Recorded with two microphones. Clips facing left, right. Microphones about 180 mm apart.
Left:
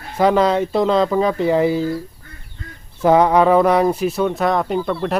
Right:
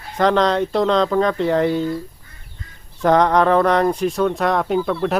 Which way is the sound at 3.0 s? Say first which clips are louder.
Left 2 dB; 5° left (ahead or behind).